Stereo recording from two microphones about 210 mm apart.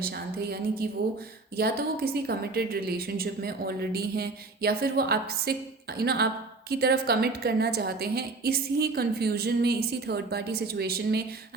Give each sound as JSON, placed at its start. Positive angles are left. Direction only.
{"t": 0.0, "sound": "a woman's voice", "side_deg": -45}